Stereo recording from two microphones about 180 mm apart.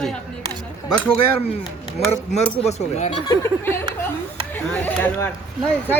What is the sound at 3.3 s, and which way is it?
Speech, 20° left (ahead or behind).